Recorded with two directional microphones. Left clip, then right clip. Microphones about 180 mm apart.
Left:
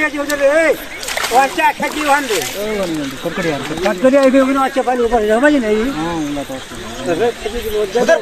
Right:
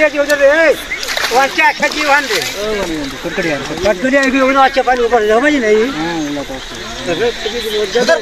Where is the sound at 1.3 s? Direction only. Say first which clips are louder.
Right 1 dB; 20° left (ahead or behind).